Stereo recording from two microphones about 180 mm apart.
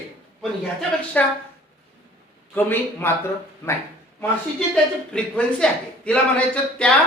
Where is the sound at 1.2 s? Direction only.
10° left (ahead or behind).